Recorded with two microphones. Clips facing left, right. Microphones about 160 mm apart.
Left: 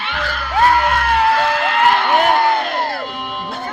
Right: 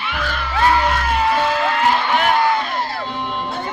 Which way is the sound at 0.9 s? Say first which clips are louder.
Left 3 dB; 60° left (ahead or behind).